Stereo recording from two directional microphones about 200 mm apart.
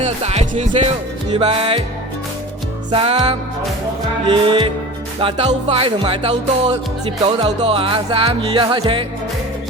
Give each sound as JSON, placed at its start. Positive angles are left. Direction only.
{"t": 0.0, "sound": "music", "side_deg": -30}
{"t": 2.9, "sound": "music", "side_deg": -30}